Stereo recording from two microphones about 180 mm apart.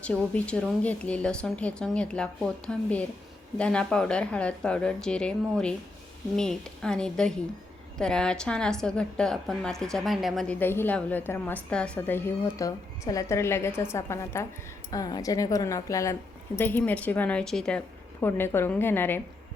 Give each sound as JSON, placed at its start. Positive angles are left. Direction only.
{"t": 0.0, "sound": "a woman's voice", "side_deg": 5}